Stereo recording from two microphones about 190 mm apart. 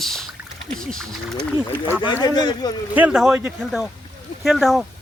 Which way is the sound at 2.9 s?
5° right (ahead or behind).